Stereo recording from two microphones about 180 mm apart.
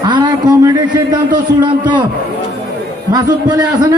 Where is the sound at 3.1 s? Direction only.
20° right (ahead or behind).